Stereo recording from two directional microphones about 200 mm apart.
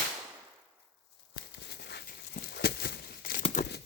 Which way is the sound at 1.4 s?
55° left (ahead or behind).